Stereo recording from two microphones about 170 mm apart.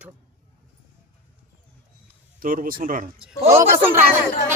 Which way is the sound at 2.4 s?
55° right (ahead or behind).